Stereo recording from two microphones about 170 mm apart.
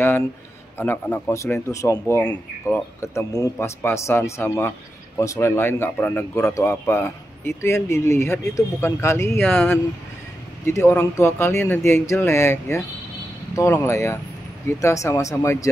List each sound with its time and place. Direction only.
0.7 s speech: 10° left (ahead or behind)